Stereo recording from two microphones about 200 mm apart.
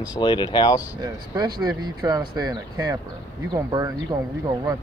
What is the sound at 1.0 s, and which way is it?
Speech, 20° right (ahead or behind).